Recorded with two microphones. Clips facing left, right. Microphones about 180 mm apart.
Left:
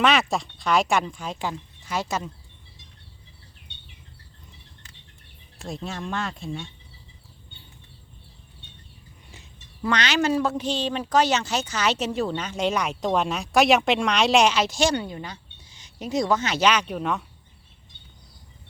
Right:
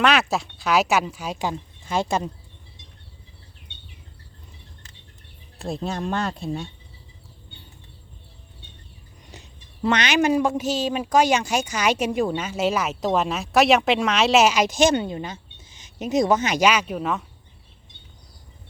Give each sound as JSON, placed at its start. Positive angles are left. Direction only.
{"t": 0.0, "sound": "speech", "side_deg": 0}
{"t": 1.8, "sound": "speech", "side_deg": -25}
{"t": 5.5, "sound": "speech", "side_deg": -35}
{"t": 9.8, "sound": "speech", "side_deg": -20}